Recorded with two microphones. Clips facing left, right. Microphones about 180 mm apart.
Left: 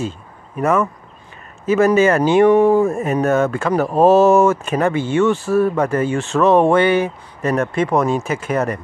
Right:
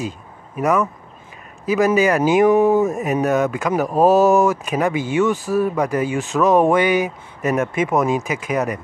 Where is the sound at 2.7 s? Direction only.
20° right (ahead or behind).